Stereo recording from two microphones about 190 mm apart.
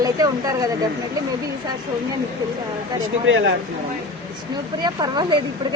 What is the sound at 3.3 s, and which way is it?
Speech, 90° right.